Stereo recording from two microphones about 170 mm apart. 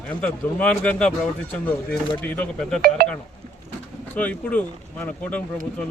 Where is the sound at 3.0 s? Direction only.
65° right (ahead or behind).